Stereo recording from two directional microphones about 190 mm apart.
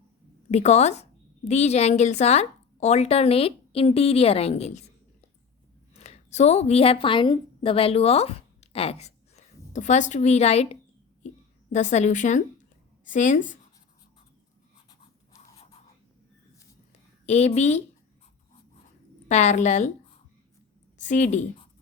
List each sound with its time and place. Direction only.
0.5 s a woman's voice: 35° left (ahead or behind)
5.9 s a woman's voice: 35° left (ahead or behind)
17.2 s a woman's voice: 35° left (ahead or behind)
19.3 s a woman's voice: 40° left (ahead or behind)
21.0 s a woman's voice: 40° left (ahead or behind)